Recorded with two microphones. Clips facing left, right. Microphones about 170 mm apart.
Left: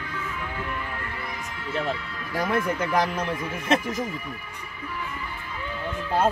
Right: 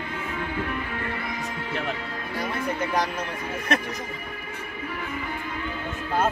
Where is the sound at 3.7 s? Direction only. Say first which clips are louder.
Left 3 dB; 25° left (ahead or behind).